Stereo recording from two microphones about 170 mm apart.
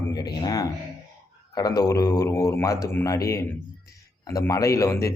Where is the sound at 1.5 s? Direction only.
20° left (ahead or behind).